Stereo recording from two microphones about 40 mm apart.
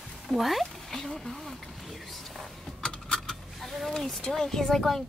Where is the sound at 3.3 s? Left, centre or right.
Centre.